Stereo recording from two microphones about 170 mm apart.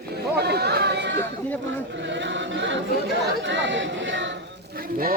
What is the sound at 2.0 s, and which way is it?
Chant, 90° right.